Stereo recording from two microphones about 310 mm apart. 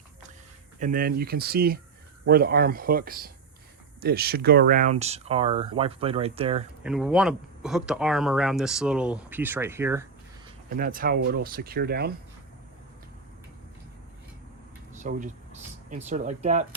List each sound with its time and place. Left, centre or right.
0.8 s speech: right
6.8 s speech: centre
10.7 s speech: right
14.9 s speech: right